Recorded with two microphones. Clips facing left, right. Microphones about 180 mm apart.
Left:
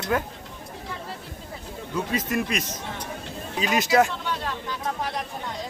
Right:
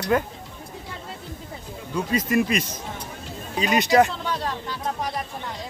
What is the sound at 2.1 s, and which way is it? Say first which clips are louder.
Speech: right 6 dB; centre (ahead or behind).